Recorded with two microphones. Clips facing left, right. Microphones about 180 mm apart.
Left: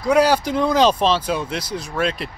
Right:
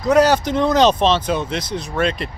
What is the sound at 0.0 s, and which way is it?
Speech, 10° left (ahead or behind).